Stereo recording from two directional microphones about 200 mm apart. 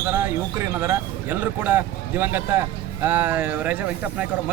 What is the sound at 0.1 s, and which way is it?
Speech, 10° right (ahead or behind).